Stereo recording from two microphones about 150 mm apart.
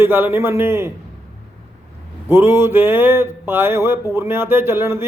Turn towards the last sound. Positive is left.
turn(degrees=-15)  # may be behind; listen again after turning